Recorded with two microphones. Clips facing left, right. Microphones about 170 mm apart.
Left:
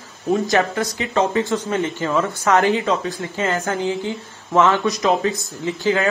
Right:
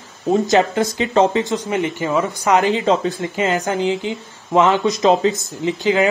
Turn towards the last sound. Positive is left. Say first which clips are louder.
# right 3 dB
turn(degrees=-15)  # may be behind; listen again after turning